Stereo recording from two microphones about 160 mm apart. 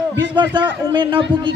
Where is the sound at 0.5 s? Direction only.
30° right (ahead or behind).